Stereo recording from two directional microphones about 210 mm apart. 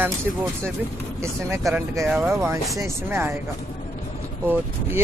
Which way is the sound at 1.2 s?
15° right (ahead or behind).